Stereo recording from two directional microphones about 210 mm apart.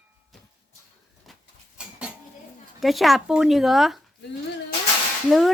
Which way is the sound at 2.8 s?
Centre (ahead or behind).